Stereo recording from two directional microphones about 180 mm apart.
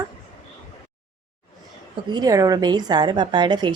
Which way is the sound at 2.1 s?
20° right (ahead or behind).